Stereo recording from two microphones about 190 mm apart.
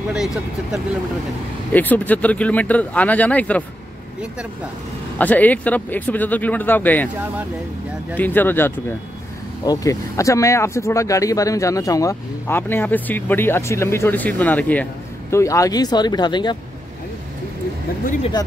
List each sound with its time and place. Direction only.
0.1 s speech: 5° right (ahead or behind)
1.7 s speech: 10° left (ahead or behind)
5.2 s speech: 10° left (ahead or behind)
8.1 s speech: 10° left (ahead or behind)